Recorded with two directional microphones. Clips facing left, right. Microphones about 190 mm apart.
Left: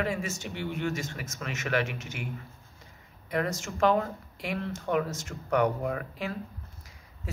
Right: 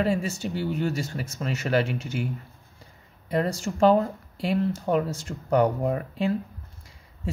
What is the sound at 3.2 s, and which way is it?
Speech, 30° right (ahead or behind).